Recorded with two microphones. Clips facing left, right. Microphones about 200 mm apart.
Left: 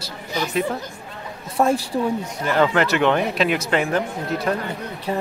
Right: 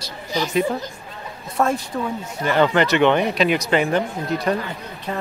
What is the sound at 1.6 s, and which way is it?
Speech, 15° left (ahead or behind).